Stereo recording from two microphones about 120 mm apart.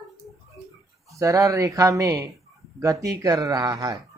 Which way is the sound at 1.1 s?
25° right (ahead or behind).